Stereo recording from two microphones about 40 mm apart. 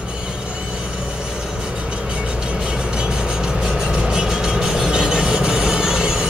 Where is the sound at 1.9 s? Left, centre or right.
Right.